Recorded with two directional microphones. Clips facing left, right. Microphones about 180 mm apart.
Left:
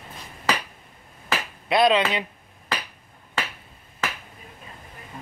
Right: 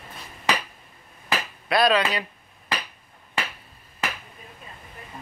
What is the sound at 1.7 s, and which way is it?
Speech, 20° left (ahead or behind).